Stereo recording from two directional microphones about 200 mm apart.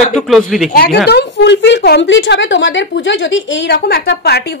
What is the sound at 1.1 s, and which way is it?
A woman's voice, 60° left (ahead or behind).